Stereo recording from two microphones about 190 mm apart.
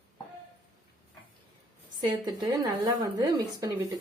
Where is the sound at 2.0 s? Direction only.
25° right (ahead or behind).